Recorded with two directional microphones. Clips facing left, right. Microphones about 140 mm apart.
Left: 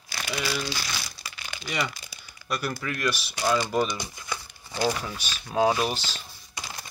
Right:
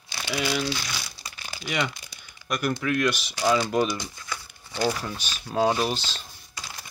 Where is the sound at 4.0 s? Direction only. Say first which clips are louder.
Left 1 dB; 15° left (ahead or behind).